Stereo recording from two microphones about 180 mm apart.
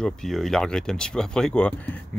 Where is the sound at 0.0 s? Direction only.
Centre (ahead or behind).